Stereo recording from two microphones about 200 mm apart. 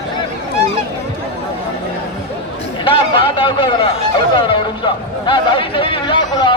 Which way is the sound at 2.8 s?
25° left (ahead or behind).